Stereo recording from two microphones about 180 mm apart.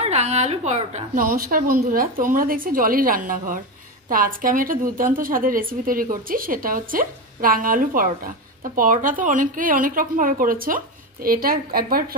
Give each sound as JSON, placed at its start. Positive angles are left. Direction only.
{"t": 0.0, "sound": "a woman's voice", "side_deg": -40}
{"t": 1.2, "sound": "a woman's voice", "side_deg": -50}